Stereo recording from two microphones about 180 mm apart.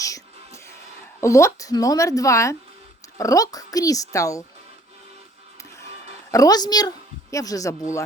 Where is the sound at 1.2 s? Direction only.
15° left (ahead or behind).